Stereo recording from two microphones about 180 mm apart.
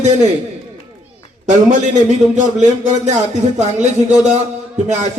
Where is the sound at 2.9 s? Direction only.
40° right (ahead or behind).